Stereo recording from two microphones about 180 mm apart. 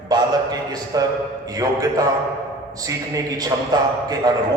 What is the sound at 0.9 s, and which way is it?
A man's voice, 20° right (ahead or behind).